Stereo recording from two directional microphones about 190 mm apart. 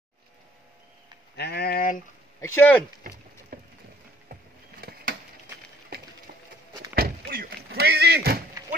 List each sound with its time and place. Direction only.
1.3 s speech: 55° left (ahead or behind)
2.4 s speech: 10° left (ahead or behind)
5.9 s a sound: 55° right (ahead or behind)